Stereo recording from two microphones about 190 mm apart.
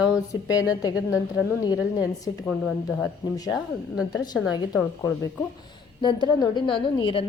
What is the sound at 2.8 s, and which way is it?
A woman's voice, 20° left (ahead or behind).